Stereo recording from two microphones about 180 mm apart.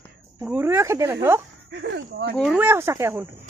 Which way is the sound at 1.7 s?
70° right (ahead or behind).